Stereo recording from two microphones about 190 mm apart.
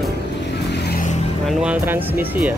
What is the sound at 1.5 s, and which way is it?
Speech, 5° right (ahead or behind).